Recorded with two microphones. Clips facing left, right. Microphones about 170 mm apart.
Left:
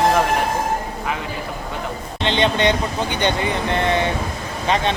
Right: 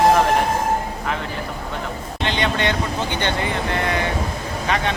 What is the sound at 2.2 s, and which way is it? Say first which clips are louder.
Speech: left 4 dB; 25° left (ahead or behind).